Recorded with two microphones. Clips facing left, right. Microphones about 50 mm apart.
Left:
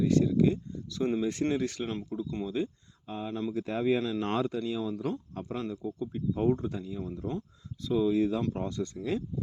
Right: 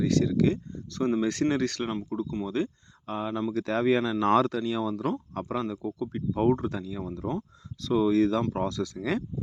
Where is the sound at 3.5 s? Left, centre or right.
Right.